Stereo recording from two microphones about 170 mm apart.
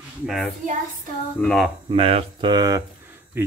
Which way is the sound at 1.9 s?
35° right (ahead or behind).